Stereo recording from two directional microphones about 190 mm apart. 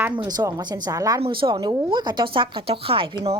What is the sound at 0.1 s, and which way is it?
Speech, 25° right (ahead or behind).